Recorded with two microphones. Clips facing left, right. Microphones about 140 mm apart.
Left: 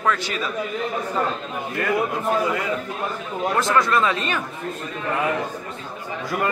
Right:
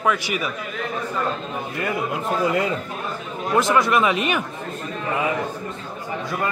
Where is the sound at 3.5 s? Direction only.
15° right (ahead or behind).